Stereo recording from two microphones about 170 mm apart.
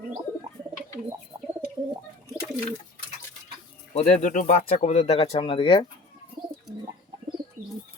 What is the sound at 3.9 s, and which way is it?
Speech, 45° left (ahead or behind).